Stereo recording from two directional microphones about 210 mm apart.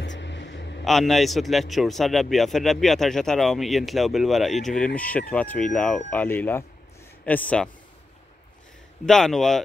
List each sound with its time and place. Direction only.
0.0 s a sound: 60° left (ahead or behind)
0.8 s a man's voice: centre (ahead or behind)
9.0 s a man's voice: centre (ahead or behind)